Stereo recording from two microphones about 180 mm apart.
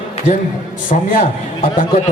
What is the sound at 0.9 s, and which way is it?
Speech, 40° left (ahead or behind).